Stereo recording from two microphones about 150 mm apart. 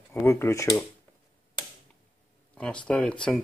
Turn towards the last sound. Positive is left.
turn(degrees=5)  # may be behind; listen again after turning